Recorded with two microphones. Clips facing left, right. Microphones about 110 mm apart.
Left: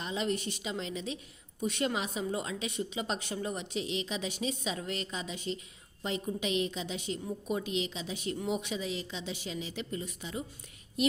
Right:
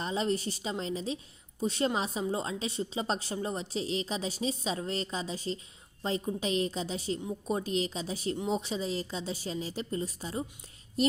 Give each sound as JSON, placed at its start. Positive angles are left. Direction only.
{"t": 0.0, "sound": "a woman's voice", "side_deg": -35}